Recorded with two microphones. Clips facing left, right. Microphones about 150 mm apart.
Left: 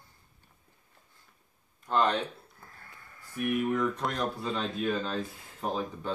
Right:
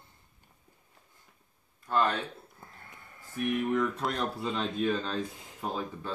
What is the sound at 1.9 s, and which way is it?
Speech, 20° left (ahead or behind).